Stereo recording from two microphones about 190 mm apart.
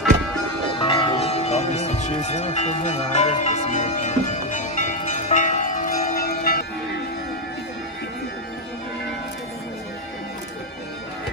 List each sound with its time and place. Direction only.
0.7 s music: 30° left (ahead or behind); by 6.6 s 50° left (ahead or behind)